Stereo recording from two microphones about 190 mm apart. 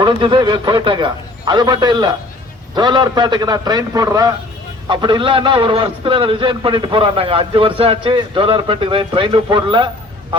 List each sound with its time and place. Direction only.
0.0 s a man's voice: 25° right (ahead or behind)